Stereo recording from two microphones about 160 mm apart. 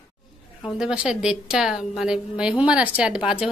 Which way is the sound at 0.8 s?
5° right (ahead or behind).